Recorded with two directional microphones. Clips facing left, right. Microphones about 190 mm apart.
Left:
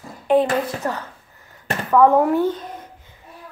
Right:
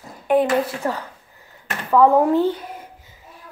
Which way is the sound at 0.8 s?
15° right (ahead or behind).